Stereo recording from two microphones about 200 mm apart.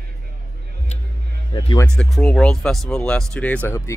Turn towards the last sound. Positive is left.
turn(degrees=10)  # may be behind; listen again after turning